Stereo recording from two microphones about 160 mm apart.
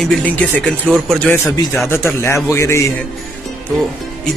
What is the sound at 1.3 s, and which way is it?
Speech, 15° left (ahead or behind).